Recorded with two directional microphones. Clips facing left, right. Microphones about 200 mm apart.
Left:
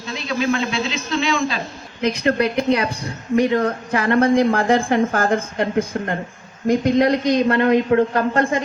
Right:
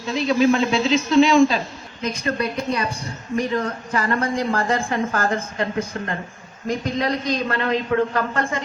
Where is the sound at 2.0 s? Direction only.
70° left (ahead or behind).